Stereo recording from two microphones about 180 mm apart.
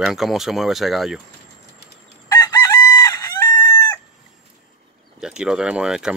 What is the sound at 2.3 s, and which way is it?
Chicken, 20° left (ahead or behind).